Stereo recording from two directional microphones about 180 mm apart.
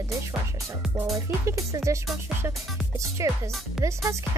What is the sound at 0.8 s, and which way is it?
Speech, 5° right (ahead or behind).